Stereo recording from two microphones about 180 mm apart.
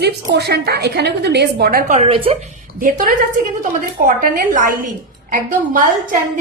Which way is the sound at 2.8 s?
50° right (ahead or behind).